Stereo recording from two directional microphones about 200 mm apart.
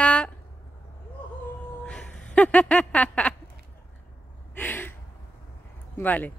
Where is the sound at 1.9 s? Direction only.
5° left (ahead or behind).